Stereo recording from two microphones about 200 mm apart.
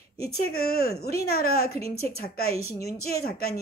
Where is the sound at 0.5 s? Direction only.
50° left (ahead or behind).